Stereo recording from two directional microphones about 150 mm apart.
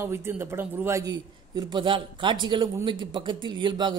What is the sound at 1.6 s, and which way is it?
Speech, 30° right (ahead or behind).